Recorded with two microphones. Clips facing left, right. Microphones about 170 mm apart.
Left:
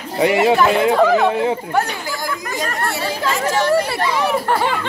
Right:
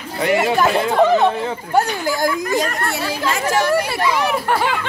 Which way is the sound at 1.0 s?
20° right (ahead or behind).